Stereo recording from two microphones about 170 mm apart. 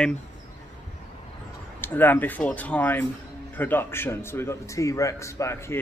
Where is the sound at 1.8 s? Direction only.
10° left (ahead or behind).